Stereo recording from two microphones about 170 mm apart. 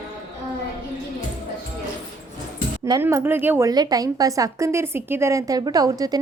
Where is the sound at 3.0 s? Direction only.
10° right (ahead or behind).